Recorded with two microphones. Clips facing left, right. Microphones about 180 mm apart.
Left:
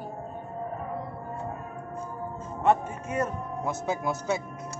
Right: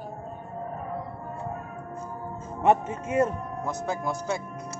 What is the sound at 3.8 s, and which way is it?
Speech, 5° left (ahead or behind).